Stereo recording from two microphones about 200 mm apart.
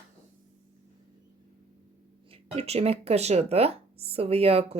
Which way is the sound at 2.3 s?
30° right (ahead or behind).